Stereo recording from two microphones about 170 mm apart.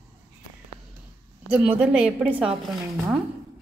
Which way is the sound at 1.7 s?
10° right (ahead or behind).